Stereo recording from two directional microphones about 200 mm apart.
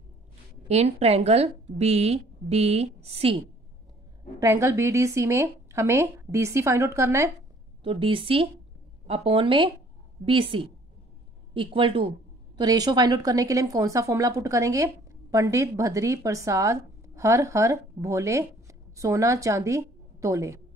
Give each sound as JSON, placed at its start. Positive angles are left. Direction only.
{"t": 0.7, "sound": "a woman's voice", "side_deg": -30}
{"t": 4.4, "sound": "speech", "side_deg": -15}
{"t": 7.8, "sound": "a woman's voice", "side_deg": -25}